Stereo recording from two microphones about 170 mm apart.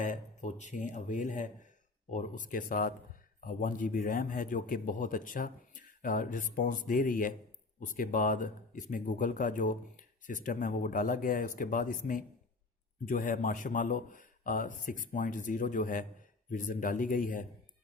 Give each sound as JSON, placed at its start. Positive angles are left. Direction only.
{"t": 0.0, "sound": "speech", "side_deg": 45}